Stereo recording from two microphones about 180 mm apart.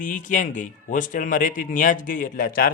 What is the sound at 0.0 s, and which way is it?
A man's voice, 45° left (ahead or behind).